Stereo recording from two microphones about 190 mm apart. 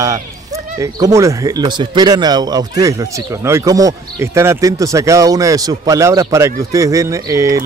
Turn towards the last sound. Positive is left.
turn(degrees=-15)  # may be behind; listen again after turning